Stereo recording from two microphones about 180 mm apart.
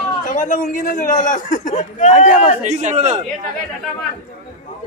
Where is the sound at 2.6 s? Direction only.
40° right (ahead or behind).